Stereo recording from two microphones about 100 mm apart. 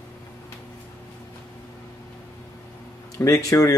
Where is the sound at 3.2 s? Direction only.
30° left (ahead or behind).